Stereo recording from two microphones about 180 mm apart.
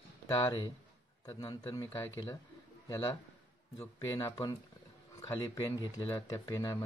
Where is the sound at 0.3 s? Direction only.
25° left (ahead or behind).